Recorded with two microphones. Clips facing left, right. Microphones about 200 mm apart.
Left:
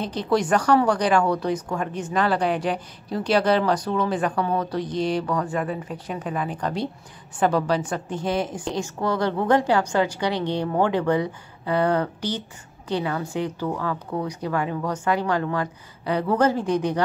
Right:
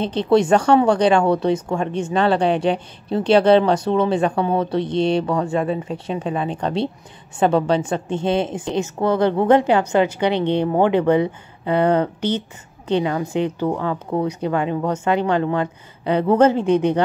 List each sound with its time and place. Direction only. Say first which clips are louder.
0.0 s speech: right 6 dB; 25° right (ahead or behind)